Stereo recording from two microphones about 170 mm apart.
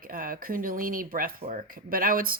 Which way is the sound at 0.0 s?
55° right (ahead or behind).